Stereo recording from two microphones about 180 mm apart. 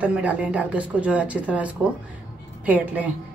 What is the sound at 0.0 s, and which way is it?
A woman's voice, 10° right (ahead or behind).